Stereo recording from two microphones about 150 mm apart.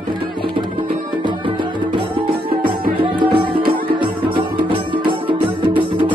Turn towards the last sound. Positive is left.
turn(degrees=-35)  # may be behind; listen again after turning